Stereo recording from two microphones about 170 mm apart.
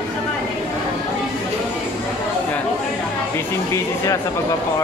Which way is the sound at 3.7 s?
20° left (ahead or behind).